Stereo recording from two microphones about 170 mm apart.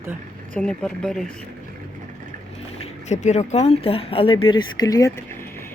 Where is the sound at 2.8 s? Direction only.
40° left (ahead or behind); by 5.7 s 15° left (ahead or behind).